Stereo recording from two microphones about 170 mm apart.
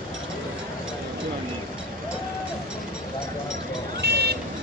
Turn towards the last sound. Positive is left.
turn(degrees=-75)  # may be behind; listen again after turning